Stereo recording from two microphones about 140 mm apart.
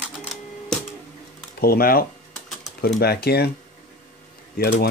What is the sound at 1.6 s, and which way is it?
Speech, 90° left.